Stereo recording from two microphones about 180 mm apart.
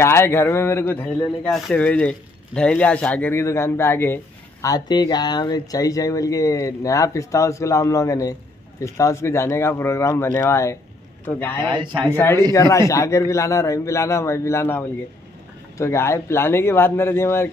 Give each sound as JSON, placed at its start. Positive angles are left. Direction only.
{"t": 0.0, "sound": "speech", "side_deg": 15}
{"t": 11.6, "sound": "a man's voice", "side_deg": -25}
{"t": 12.5, "sound": "speech", "side_deg": 15}